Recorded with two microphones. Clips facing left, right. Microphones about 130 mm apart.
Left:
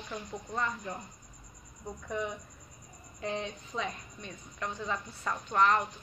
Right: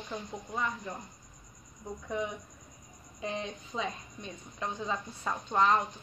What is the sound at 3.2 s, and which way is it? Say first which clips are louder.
A woman's voice: left 1 dB; 15° right (ahead or behind).